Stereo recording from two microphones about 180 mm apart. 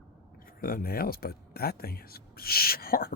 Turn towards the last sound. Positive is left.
turn(degrees=55)  # may be behind; listen again after turning